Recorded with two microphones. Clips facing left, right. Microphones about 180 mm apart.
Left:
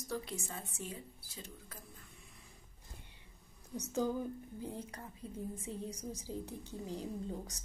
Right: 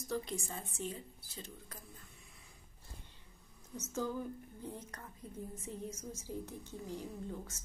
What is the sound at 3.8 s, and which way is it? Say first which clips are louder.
A woman's voice: left 3 dB; 15° left (ahead or behind).